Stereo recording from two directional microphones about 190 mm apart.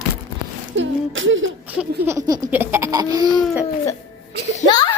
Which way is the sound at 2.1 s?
20° right (ahead or behind).